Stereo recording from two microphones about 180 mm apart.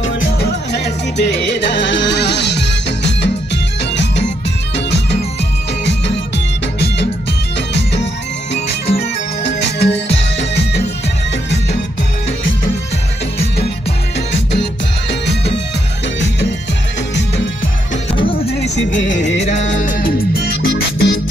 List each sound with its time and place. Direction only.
0.2 s music: 65° left (ahead or behind)
5.9 s music: 75° left (ahead or behind)
7.7 s music: 75° left (ahead or behind)
15.0 s music: 70° left (ahead or behind)
16.2 s music: 85° left
18.4 s music: 35° left (ahead or behind)
18.8 s music: 90° left
19.4 s music: 40° left (ahead or behind); by 21.2 s 80° left